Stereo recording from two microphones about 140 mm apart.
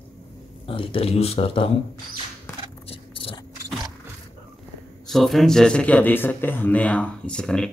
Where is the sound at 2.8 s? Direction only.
40° left (ahead or behind).